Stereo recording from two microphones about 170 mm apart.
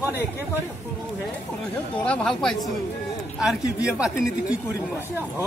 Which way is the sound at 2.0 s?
5° left (ahead or behind).